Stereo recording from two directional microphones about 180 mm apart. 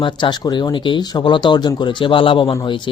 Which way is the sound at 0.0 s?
25° left (ahead or behind).